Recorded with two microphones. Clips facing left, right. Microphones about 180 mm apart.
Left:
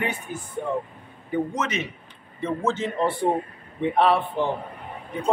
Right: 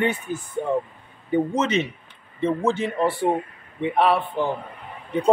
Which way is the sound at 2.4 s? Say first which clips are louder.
Right 3 dB; 15° right (ahead or behind).